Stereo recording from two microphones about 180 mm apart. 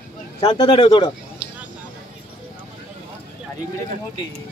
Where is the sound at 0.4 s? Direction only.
30° left (ahead or behind).